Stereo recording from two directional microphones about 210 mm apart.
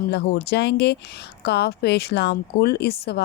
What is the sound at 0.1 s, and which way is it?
Speech, 50° left (ahead or behind).